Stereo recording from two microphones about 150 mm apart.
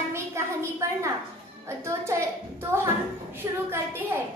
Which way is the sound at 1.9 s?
20° right (ahead or behind).